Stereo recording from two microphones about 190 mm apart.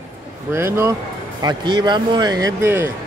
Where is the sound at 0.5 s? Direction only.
15° right (ahead or behind).